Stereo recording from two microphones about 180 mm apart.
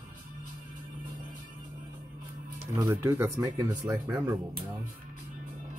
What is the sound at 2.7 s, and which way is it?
Speech, 15° right (ahead or behind).